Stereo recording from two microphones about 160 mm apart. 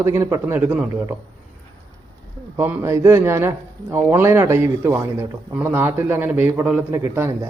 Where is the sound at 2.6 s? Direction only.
15° right (ahead or behind).